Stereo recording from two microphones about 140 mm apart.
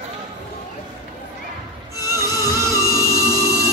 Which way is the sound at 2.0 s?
25° left (ahead or behind).